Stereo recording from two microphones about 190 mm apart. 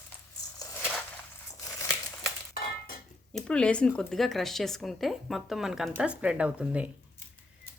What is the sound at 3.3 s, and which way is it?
Speech, 5° left (ahead or behind).